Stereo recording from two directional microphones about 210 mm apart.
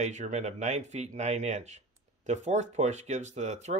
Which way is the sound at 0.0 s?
35° right (ahead or behind).